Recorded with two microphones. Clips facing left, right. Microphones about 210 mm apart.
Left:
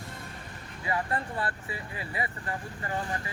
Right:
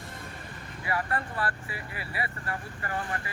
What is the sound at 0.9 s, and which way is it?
Speech, 20° left (ahead or behind).